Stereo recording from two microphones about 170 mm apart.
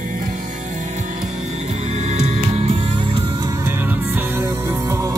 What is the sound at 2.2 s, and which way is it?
Music, 40° right (ahead or behind).